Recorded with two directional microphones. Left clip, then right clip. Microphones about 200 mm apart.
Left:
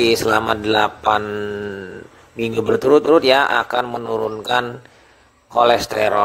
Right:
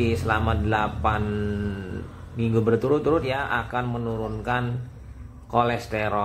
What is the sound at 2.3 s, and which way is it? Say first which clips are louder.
Speech: left 4 dB; 40° left (ahead or behind).